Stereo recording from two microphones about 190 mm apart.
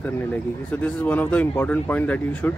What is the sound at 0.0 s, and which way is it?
Speech, 10° left (ahead or behind).